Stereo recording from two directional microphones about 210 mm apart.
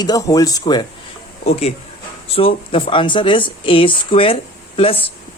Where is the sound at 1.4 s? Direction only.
30° left (ahead or behind).